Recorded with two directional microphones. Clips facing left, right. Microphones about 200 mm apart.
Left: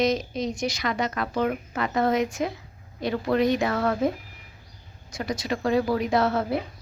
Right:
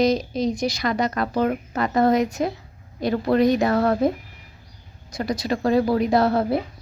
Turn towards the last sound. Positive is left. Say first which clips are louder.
# right 4 dB
turn(degrees=-35)  # may be behind; listen again after turning